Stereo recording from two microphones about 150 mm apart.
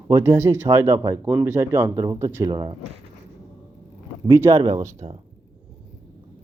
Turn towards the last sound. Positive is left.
turn(degrees=-20)  # may be behind; listen again after turning